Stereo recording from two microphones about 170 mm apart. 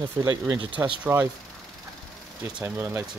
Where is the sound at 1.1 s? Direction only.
15° right (ahead or behind).